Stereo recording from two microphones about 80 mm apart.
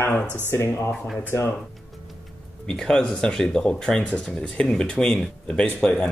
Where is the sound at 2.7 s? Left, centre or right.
Centre.